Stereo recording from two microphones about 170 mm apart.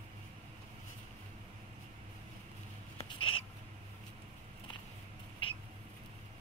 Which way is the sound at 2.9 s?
30° left (ahead or behind).